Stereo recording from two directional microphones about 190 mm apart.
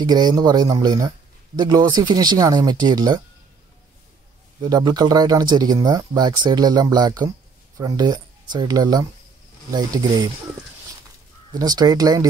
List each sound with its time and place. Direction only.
0.0 s speech: 20° right (ahead or behind)
4.6 s speech: 20° right (ahead or behind)
11.5 s speech: 20° right (ahead or behind)